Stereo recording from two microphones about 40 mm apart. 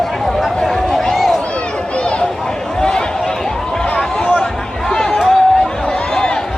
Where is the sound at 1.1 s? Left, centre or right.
Centre.